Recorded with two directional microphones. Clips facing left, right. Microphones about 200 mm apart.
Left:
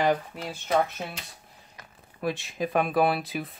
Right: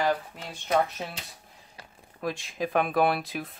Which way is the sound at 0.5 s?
5° left (ahead or behind).